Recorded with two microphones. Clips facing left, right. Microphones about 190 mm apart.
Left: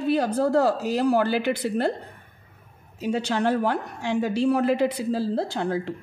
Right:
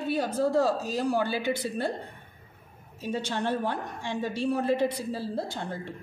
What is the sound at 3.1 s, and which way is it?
A woman's voice, 75° left (ahead or behind).